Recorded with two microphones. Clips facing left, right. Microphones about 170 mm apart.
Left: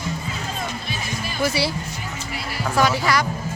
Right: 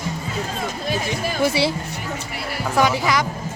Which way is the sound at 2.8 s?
20° right (ahead or behind).